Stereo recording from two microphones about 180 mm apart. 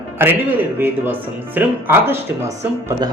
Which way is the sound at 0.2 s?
10° right (ahead or behind).